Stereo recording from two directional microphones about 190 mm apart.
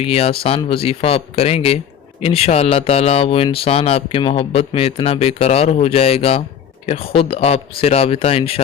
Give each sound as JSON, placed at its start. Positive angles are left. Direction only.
{"t": 0.0, "sound": "speech", "side_deg": 30}